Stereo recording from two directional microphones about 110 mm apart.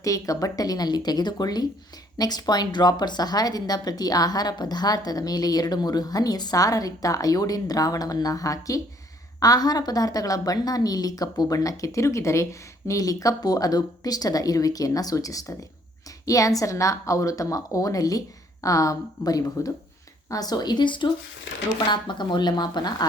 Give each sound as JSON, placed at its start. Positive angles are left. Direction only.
{"t": 0.0, "sound": "speech", "side_deg": 30}